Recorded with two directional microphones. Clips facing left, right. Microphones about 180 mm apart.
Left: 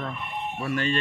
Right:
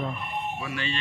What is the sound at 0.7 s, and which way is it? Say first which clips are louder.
Speech: left 6 dB; 50° left (ahead or behind).